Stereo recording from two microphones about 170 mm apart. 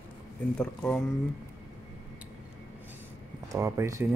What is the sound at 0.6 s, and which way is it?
Speech, 5° left (ahead or behind).